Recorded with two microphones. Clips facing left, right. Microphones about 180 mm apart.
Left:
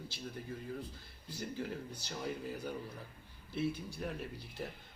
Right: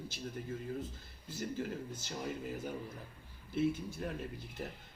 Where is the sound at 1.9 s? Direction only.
20° right (ahead or behind).